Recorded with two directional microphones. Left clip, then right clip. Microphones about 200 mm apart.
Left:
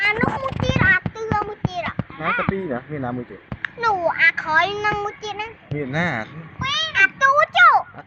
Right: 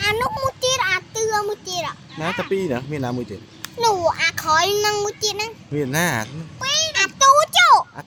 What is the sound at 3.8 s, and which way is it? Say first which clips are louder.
A child's voice: even; 70° right (ahead or behind).